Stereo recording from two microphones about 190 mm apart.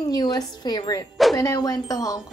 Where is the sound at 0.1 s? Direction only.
20° left (ahead or behind).